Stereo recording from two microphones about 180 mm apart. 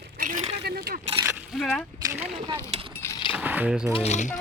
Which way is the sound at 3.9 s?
35° left (ahead or behind).